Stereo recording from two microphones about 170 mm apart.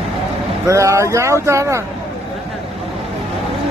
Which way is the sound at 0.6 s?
20° right (ahead or behind).